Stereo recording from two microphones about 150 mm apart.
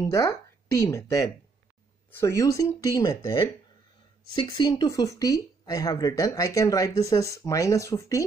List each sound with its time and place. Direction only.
0.1 s speech: 20° left (ahead or behind)
4.4 s speech: 30° left (ahead or behind)